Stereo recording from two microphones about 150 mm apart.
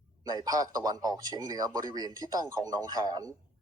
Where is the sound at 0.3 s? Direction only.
25° right (ahead or behind).